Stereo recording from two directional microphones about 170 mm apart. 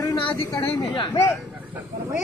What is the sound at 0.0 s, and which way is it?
Speech, 20° left (ahead or behind).